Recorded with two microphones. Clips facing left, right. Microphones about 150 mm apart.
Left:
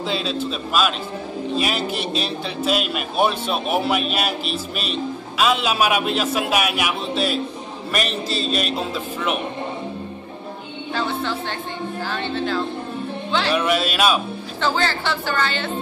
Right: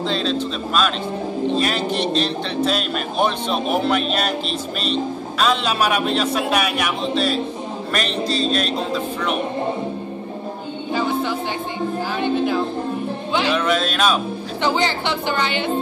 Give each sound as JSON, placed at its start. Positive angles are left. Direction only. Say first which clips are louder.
{"t": 0.0, "sound": "speech", "louder": "right 2 dB", "side_deg": 5}
{"t": 10.9, "sound": "a woman's voice", "louder": "right 3 dB", "side_deg": -10}
{"t": 13.5, "sound": "speech", "louder": "even", "side_deg": 10}
{"t": 14.6, "sound": "a woman's voice", "louder": "right 1 dB", "side_deg": -15}